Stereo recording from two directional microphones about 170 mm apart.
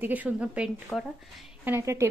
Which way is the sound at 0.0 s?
10° right (ahead or behind).